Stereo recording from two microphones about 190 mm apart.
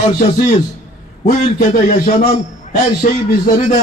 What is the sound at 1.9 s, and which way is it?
A man's voice, 35° left (ahead or behind).